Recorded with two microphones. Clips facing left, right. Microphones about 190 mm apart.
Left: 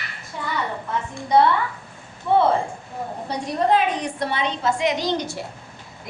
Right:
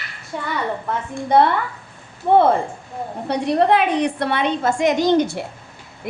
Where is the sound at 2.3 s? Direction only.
50° right (ahead or behind).